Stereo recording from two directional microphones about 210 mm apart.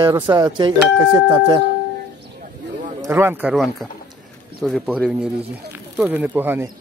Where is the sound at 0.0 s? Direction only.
20° right (ahead or behind).